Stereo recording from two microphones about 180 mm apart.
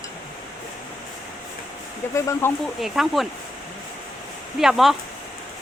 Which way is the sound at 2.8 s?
Centre (ahead or behind).